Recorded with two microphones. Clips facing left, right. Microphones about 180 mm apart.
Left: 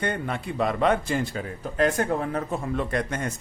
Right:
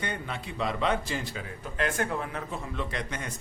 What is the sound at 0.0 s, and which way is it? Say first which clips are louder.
A man's voice: left 7 dB; 50° left (ahead or behind).